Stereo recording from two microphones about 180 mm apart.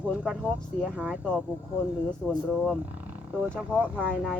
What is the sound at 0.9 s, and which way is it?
Speech, 5° right (ahead or behind).